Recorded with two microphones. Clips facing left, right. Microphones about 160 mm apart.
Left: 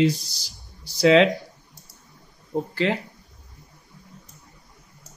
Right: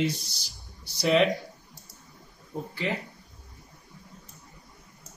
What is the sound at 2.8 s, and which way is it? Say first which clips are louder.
Speech: left 5 dB; 90° left.